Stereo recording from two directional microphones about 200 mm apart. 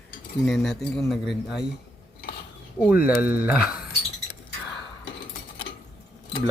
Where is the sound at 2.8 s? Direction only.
5° right (ahead or behind).